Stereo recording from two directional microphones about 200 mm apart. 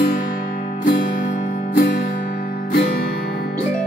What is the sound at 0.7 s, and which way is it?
Music, 40° left (ahead or behind).